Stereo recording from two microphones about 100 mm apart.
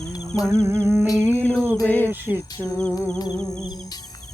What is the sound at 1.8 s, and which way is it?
Music, 20° left (ahead or behind).